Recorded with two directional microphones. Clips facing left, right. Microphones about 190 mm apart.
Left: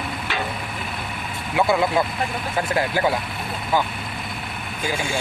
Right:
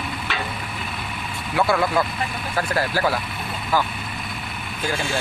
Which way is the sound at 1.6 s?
20° left (ahead or behind).